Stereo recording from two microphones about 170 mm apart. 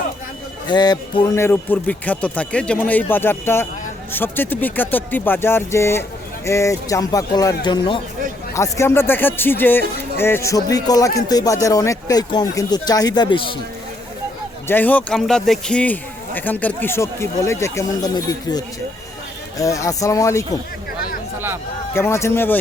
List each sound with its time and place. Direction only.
0.7 s speech: 25° left (ahead or behind)
14.7 s speech: 10° left (ahead or behind)
21.3 s speech: 15° right (ahead or behind)
21.9 s speech: 15° left (ahead or behind)